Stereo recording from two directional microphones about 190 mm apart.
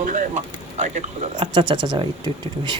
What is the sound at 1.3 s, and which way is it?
Speech, 25° right (ahead or behind).